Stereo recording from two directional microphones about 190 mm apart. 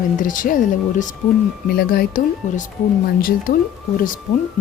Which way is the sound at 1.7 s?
55° left (ahead or behind).